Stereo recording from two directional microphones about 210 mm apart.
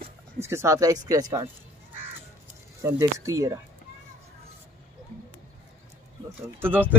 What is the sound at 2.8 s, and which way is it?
Speech, 15° right (ahead or behind).